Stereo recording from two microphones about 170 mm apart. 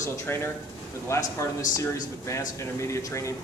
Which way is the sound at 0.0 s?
15° left (ahead or behind).